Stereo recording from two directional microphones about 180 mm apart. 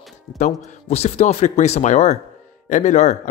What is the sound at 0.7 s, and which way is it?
Speech, 35° left (ahead or behind).